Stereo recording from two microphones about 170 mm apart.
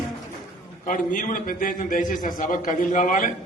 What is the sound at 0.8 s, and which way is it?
A man's voice, 50° left (ahead or behind).